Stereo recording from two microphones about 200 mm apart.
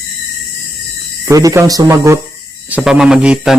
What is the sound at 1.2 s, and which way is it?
Speech, 15° right (ahead or behind).